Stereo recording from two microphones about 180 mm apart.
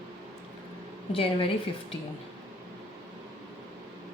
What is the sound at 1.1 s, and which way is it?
Speech, 30° left (ahead or behind).